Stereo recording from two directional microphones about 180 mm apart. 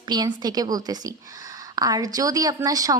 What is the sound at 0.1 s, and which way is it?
A woman's voice, 25° right (ahead or behind).